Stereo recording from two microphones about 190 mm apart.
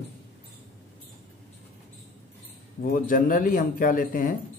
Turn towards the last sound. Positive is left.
turn(degrees=45)  # may be behind; listen again after turning